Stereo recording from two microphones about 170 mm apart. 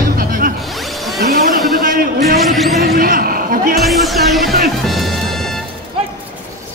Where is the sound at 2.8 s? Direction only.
60° right (ahead or behind).